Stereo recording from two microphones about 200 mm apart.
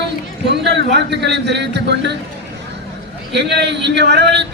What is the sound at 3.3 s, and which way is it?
A man's voice, 60° right (ahead or behind).